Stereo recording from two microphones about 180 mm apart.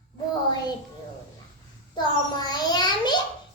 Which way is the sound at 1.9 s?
20° left (ahead or behind).